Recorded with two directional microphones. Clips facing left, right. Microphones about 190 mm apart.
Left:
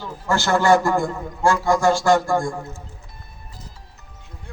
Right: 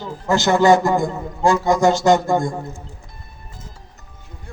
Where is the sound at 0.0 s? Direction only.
20° right (ahead or behind).